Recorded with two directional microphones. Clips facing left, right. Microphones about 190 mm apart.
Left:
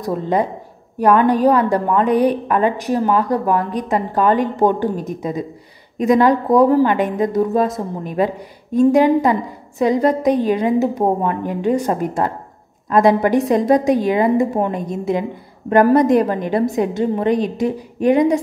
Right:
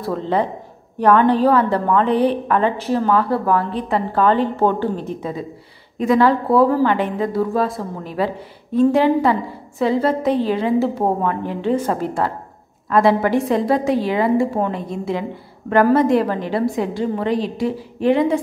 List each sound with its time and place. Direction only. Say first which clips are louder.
0.9 s a woman's voice: even; 10° left (ahead or behind)